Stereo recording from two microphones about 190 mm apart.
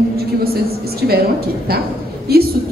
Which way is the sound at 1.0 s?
55° right (ahead or behind).